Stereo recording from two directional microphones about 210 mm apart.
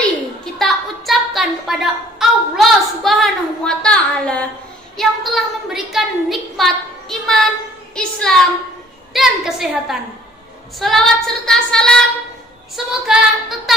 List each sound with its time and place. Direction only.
0.6 s a woman's voice: centre (ahead or behind)